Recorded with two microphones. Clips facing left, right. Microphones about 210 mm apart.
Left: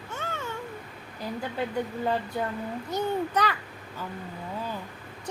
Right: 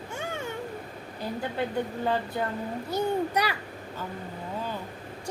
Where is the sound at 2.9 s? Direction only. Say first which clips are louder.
Right 1 dB; 10° right (ahead or behind).